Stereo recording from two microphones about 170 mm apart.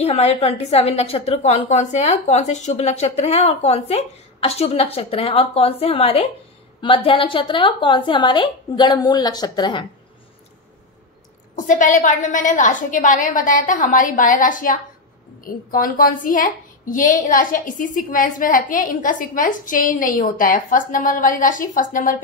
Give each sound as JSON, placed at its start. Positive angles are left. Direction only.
{"t": 0.0, "sound": "a woman's voice", "side_deg": 40}
{"t": 11.5, "sound": "a woman's voice", "side_deg": 50}